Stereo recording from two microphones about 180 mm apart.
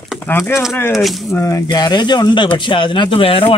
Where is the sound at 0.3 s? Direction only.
15° left (ahead or behind).